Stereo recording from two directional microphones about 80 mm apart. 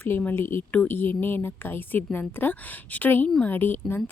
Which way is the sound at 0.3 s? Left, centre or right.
Left.